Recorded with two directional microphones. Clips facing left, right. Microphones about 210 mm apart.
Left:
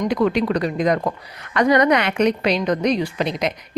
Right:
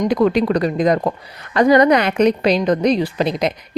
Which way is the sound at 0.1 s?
35° right (ahead or behind).